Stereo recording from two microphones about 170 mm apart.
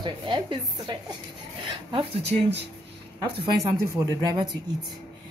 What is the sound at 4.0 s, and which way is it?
Speech, 15° right (ahead or behind).